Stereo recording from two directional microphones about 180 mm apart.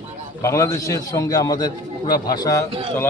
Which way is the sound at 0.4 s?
15° left (ahead or behind).